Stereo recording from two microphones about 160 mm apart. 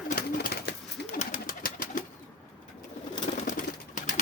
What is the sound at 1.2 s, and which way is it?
Bird, 60° left (ahead or behind).